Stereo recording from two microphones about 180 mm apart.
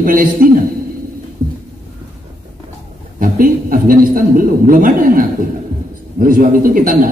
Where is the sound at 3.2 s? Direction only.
50° right (ahead or behind).